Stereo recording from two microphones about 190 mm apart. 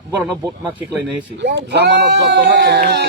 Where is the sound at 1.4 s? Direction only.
65° right (ahead or behind).